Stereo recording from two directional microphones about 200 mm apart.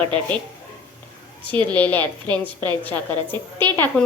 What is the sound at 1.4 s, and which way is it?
A woman's voice, 10° left (ahead or behind).